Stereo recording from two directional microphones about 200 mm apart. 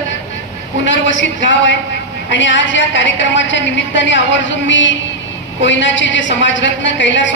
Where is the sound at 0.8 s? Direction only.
65° left (ahead or behind).